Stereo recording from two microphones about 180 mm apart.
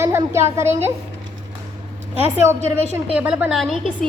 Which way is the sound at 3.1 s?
5° right (ahead or behind).